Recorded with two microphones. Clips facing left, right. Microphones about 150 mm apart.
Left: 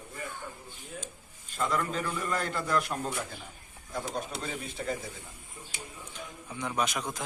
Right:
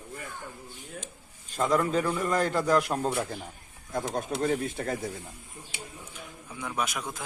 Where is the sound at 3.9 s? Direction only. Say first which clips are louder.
Right 4 dB; 50° right (ahead or behind).